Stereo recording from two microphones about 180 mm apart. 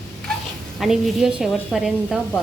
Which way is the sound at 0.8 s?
Centre (ahead or behind).